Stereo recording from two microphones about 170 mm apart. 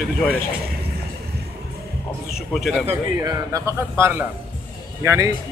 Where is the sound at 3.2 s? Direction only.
20° right (ahead or behind).